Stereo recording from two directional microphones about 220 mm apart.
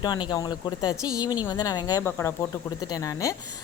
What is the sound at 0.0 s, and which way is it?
A woman's voice, 20° left (ahead or behind).